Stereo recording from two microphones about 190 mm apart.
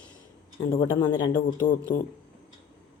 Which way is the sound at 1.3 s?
45° left (ahead or behind).